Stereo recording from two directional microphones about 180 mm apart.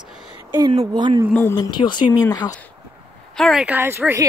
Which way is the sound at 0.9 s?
20° right (ahead or behind).